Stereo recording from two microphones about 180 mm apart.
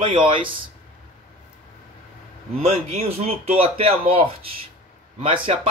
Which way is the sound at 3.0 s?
35° right (ahead or behind).